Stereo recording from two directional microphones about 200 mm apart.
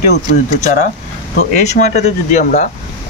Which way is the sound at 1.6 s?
35° left (ahead or behind).